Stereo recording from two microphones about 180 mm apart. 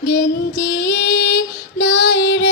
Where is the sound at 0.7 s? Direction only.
70° left (ahead or behind).